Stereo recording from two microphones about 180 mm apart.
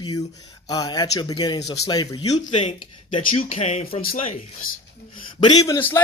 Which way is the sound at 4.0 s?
55° left (ahead or behind).